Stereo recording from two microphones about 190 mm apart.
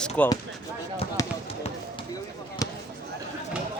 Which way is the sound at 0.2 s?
10° left (ahead or behind).